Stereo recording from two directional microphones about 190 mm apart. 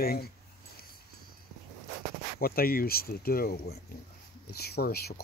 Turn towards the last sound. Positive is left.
turn(degrees=55)  # may be behind; listen again after turning